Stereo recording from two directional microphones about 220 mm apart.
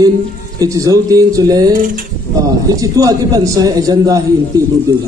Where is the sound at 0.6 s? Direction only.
15° right (ahead or behind).